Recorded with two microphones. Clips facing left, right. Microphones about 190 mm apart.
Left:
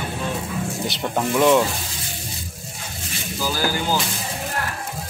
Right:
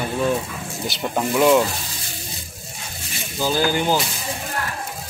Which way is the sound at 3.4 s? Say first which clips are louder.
Right 4 dB; 20° right (ahead or behind).